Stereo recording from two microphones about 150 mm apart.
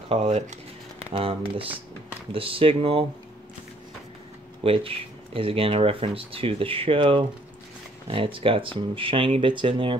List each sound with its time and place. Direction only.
0.1 s speech: 45° right (ahead or behind)
4.6 s speech: 40° right (ahead or behind)